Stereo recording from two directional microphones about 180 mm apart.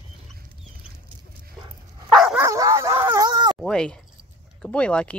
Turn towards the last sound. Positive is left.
turn(degrees=5)  # may be behind; listen again after turning